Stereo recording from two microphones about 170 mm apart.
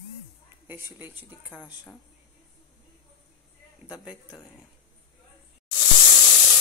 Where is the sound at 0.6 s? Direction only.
10° right (ahead or behind).